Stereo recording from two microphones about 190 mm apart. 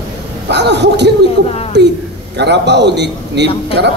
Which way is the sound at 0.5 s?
65° right (ahead or behind).